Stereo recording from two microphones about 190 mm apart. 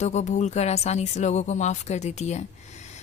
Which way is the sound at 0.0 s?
35° left (ahead or behind).